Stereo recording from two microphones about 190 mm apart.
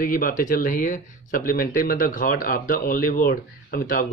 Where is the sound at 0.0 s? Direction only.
45° left (ahead or behind).